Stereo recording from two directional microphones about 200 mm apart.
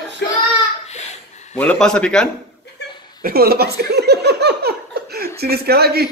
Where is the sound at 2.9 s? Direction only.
20° left (ahead or behind).